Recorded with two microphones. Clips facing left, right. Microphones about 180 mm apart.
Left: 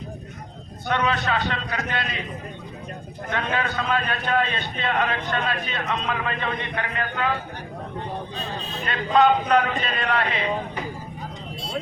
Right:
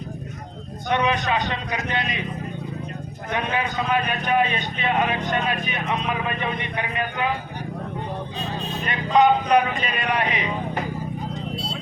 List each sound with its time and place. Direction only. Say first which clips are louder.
0.9 s a man's voice: right 2 dB; 15° right (ahead or behind)
3.3 s a man's voice: right 1 dB; 15° right (ahead or behind)
8.9 s a man's voice: right 1 dB; 15° right (ahead or behind)